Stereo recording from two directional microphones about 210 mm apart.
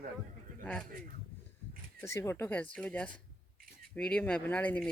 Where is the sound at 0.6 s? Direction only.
5° left (ahead or behind).